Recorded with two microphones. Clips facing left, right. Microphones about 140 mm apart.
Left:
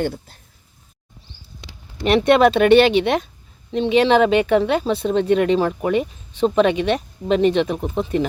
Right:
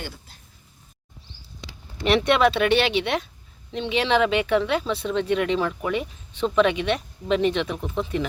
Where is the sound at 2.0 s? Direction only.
40° left (ahead or behind).